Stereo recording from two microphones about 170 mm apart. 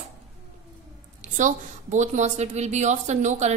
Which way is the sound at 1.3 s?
45° right (ahead or behind).